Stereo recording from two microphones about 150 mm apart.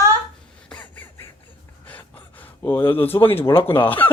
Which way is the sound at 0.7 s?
10° left (ahead or behind).